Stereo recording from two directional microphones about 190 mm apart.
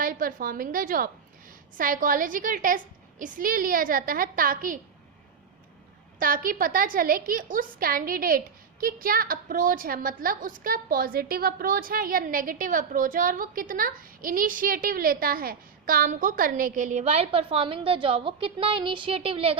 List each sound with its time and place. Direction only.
0.0 s a woman's voice: 45° right (ahead or behind)
6.1 s a woman's voice: 45° right (ahead or behind); by 19.5 s 30° right (ahead or behind)